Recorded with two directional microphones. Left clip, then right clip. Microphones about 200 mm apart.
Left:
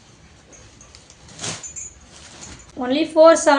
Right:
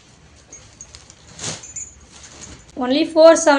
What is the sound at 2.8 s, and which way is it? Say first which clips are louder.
Speech: right 1 dB; 25° right (ahead or behind).